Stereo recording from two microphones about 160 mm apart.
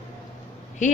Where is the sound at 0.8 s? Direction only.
50° left (ahead or behind).